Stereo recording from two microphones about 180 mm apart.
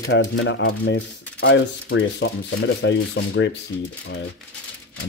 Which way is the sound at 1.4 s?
90° left.